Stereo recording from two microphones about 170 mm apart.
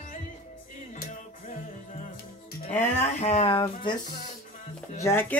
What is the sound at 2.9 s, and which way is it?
Speech, 45° left (ahead or behind).